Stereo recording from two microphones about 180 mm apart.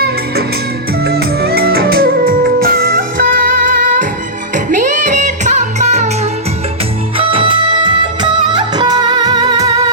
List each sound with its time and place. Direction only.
1.0 s music: 60° right (ahead or behind); by 6.1 s 40° right (ahead or behind)
7.2 s music of bollywood: 30° right (ahead or behind)